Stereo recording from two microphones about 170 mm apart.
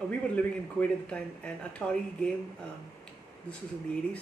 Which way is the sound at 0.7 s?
5° left (ahead or behind).